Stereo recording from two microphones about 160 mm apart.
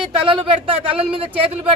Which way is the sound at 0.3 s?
35° right (ahead or behind).